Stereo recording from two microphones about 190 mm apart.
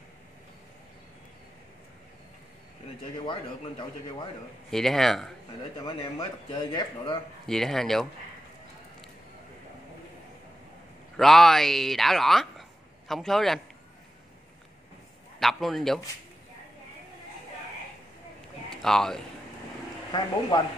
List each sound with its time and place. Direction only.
3.3 s speech: 25° left (ahead or behind)
4.6 s speech: centre (ahead or behind)
5.8 s speech: 20° left (ahead or behind)
7.4 s speech: centre (ahead or behind)
11.1 s speech: centre (ahead or behind)
15.3 s a man's voice: centre (ahead or behind)
18.7 s speech: centre (ahead or behind)
20.1 s speech: 25° left (ahead or behind)